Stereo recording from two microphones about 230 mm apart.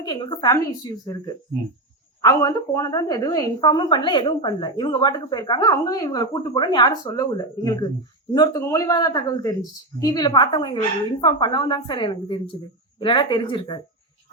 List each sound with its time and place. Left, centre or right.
0.0 s a woman's voice: centre